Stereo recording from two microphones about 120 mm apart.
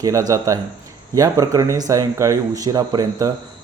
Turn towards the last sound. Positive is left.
turn(degrees=-30)  # may be behind; listen again after turning